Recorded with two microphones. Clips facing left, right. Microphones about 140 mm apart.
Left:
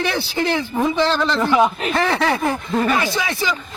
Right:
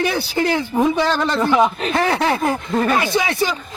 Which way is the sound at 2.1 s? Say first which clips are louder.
Right 1 dB; 10° right (ahead or behind).